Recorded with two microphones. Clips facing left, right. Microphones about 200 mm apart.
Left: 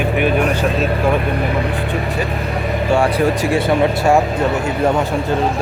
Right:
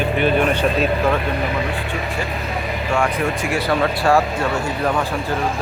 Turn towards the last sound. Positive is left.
turn(degrees=25)  # may be behind; listen again after turning